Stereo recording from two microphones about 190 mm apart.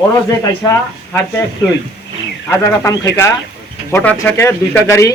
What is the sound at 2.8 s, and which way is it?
A man's voice, 15° left (ahead or behind).